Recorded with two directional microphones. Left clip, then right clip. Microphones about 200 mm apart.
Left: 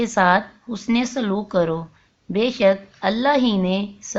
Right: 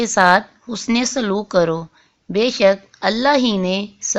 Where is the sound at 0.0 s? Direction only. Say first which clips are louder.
Right 4 dB; 35° right (ahead or behind).